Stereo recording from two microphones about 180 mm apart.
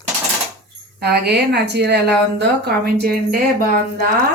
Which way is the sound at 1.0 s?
65° right (ahead or behind).